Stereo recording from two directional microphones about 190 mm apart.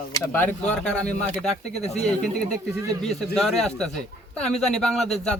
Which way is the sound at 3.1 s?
Centre (ahead or behind).